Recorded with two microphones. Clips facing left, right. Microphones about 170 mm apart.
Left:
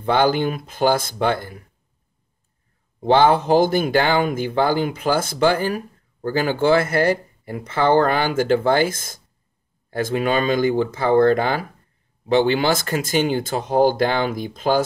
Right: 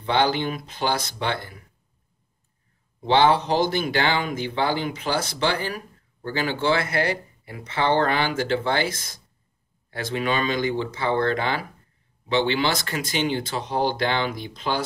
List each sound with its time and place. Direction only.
0.0 s speech: 50° left (ahead or behind)
3.0 s speech: 50° left (ahead or behind)